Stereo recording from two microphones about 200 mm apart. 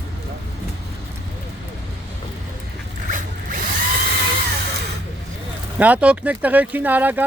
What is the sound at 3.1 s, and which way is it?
Zipper, 40° right (ahead or behind).